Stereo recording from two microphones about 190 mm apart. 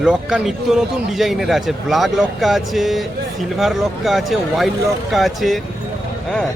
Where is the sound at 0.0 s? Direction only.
5° right (ahead or behind).